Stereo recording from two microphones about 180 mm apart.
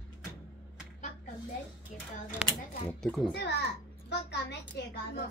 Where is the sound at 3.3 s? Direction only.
70° left (ahead or behind).